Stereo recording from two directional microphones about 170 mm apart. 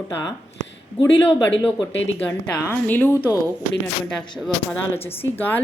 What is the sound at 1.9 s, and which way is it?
Speech, 90° left.